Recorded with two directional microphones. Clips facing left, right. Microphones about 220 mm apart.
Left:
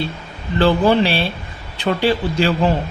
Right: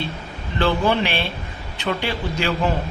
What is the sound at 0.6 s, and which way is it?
Speech, 35° left (ahead or behind).